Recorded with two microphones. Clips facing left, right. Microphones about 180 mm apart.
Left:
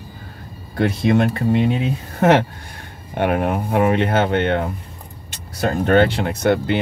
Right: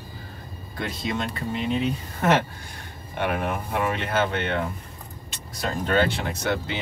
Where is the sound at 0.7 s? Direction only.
60° left (ahead or behind).